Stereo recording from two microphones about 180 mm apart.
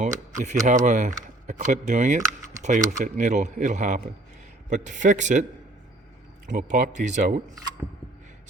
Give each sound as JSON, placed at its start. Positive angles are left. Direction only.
{"t": 0.0, "sound": "speech", "side_deg": -40}
{"t": 6.5, "sound": "speech", "side_deg": -45}